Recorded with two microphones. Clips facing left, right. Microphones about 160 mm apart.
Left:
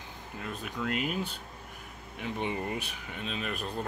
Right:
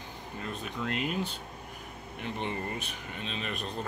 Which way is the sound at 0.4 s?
5° left (ahead or behind).